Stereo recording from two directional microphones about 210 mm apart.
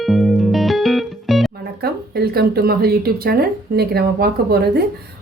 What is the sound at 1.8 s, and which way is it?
Speech, 50° right (ahead or behind).